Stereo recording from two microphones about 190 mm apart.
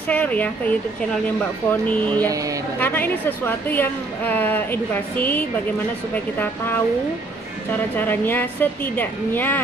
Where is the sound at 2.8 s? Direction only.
10° left (ahead or behind).